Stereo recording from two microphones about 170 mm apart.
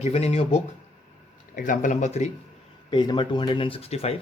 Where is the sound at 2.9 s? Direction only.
25° left (ahead or behind).